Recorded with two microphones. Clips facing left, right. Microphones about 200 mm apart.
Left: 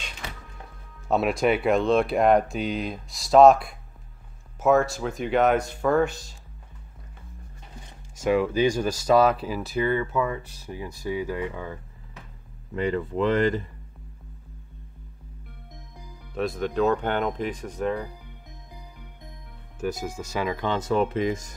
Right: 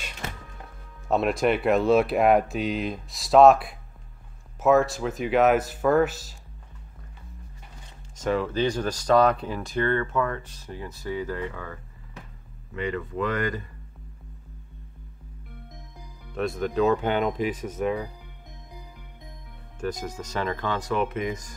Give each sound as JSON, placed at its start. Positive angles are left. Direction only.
{"t": 1.0, "sound": "speech", "side_deg": 0}
{"t": 8.2, "sound": "speech", "side_deg": 10}
{"t": 12.7, "sound": "speech", "side_deg": 35}
{"t": 16.3, "sound": "speech", "side_deg": 0}
{"t": 19.8, "sound": "speech", "side_deg": 5}